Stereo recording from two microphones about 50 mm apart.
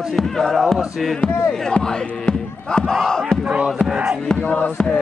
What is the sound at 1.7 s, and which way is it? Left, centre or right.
Battle cry, centre.